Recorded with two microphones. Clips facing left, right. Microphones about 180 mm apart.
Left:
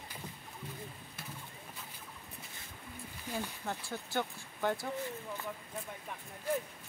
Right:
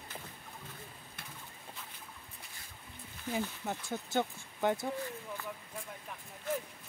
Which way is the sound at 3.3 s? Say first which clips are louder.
Right 2 dB; 15° right (ahead or behind).